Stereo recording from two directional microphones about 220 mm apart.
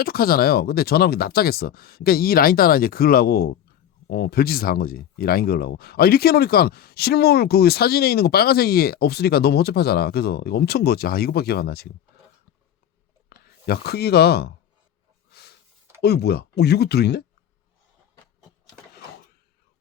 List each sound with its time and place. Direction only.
0.0 s speech: 45° left (ahead or behind)
13.3 s speech: 45° left (ahead or behind)
15.3 s a sound: 45° left (ahead or behind)
16.0 s speech: 50° left (ahead or behind)